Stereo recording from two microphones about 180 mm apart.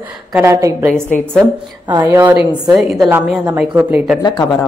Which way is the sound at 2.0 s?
10° right (ahead or behind).